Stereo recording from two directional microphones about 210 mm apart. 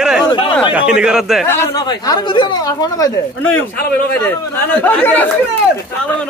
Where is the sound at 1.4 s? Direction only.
10° left (ahead or behind).